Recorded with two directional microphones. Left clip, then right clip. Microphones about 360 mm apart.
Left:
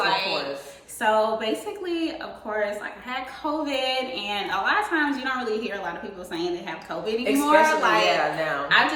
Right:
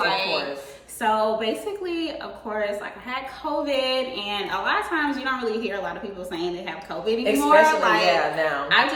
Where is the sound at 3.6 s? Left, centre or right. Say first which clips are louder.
Right 3 dB; centre.